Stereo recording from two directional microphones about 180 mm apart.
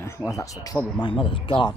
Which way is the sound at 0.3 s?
15° left (ahead or behind).